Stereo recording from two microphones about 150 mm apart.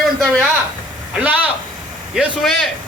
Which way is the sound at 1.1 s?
10° right (ahead or behind).